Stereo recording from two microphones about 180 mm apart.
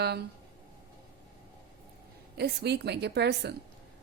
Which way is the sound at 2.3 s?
65° right (ahead or behind).